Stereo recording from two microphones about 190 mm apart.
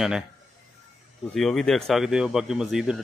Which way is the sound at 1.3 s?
Centre (ahead or behind).